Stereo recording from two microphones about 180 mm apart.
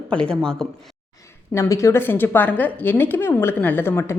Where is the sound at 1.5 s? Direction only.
15° left (ahead or behind).